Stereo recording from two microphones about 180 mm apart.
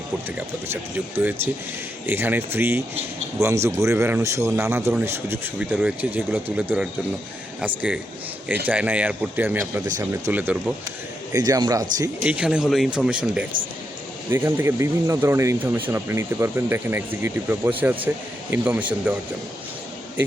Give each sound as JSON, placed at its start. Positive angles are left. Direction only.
{"t": 0.3, "sound": "speech", "side_deg": -10}
{"t": 12.2, "sound": "speech", "side_deg": -5}